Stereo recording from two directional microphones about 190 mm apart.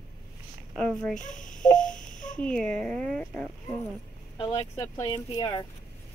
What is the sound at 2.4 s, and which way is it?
A woman's voice, 5° left (ahead or behind).